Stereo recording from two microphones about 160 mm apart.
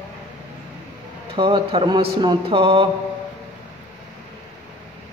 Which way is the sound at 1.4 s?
30° right (ahead or behind).